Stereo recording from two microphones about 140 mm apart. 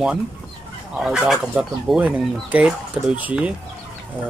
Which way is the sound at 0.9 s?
5° right (ahead or behind).